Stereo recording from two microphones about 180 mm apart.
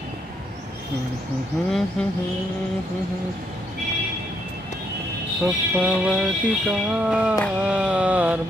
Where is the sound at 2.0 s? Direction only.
5° left (ahead or behind).